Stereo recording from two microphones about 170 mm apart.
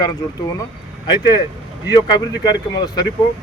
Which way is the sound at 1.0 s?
25° left (ahead or behind).